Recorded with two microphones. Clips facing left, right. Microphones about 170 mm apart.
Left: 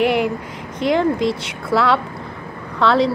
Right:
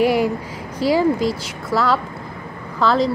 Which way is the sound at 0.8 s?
5° right (ahead or behind).